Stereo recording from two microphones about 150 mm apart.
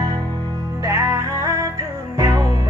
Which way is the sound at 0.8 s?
20° right (ahead or behind).